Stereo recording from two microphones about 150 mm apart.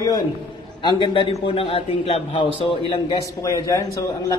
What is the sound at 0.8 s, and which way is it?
A man's voice, 30° left (ahead or behind).